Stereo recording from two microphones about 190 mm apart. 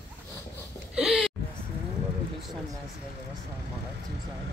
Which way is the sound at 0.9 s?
5° right (ahead or behind).